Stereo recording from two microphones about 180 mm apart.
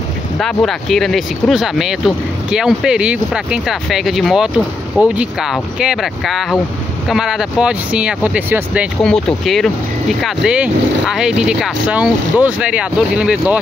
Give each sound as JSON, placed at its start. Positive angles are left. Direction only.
{"t": 0.4, "sound": "speech", "side_deg": 5}
{"t": 9.0, "sound": "speech", "side_deg": 0}